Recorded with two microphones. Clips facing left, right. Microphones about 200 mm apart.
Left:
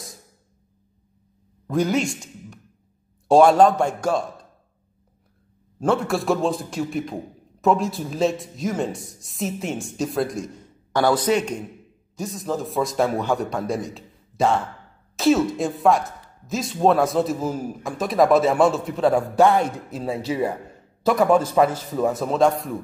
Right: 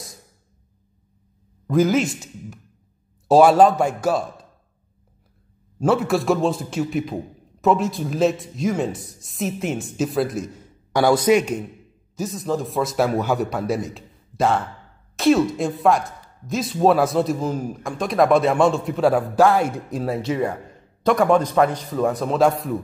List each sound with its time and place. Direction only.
1.7 s a man's voice: centre (ahead or behind)
5.8 s speech: centre (ahead or behind)
19.9 s speech: 15° right (ahead or behind)
21.0 s speech: 5° left (ahead or behind)